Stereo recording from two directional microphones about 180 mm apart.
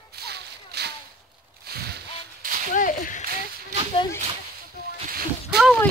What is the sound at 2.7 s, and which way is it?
Whip, 45° left (ahead or behind).